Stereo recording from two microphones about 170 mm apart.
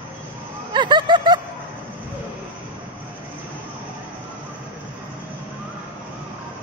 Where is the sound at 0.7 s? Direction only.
25° right (ahead or behind).